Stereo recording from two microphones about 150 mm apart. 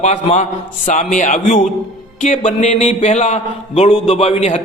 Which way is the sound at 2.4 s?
50° left (ahead or behind).